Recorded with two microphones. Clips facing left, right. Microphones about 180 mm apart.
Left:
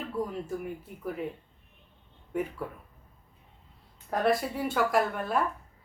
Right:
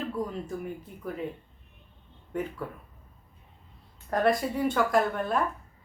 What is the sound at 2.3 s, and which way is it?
Speech, 10° left (ahead or behind).